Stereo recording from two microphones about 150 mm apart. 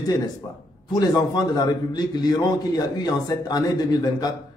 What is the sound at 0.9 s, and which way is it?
A man's voice, 25° left (ahead or behind).